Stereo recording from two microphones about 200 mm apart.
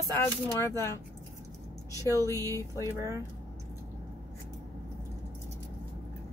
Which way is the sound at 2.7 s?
15° right (ahead or behind).